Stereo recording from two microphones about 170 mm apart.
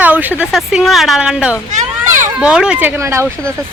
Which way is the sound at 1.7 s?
45° right (ahead or behind).